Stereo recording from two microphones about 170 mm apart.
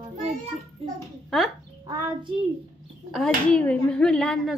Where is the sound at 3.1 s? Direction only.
5° left (ahead or behind).